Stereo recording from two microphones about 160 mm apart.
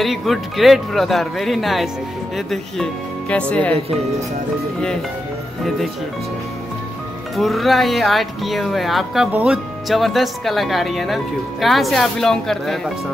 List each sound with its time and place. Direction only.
0.0 s speech: centre (ahead or behind)
5.6 s speech: centre (ahead or behind)
7.3 s speech: centre (ahead or behind)